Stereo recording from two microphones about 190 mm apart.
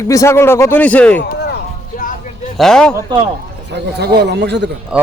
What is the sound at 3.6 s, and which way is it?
Speech, 60° right (ahead or behind).